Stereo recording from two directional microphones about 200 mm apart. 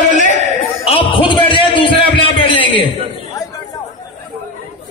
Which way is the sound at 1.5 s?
25° left (ahead or behind).